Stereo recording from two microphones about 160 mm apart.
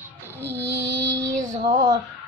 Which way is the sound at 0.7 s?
90° right.